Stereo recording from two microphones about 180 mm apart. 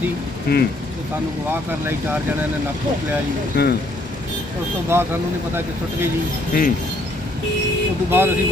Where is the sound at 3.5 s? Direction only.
65° left (ahead or behind).